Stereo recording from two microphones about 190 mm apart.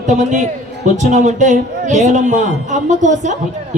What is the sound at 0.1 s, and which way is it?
A man's voice, 40° right (ahead or behind).